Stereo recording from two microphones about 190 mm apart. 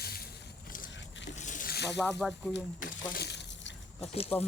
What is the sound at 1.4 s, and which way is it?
Boat, 45° left (ahead or behind).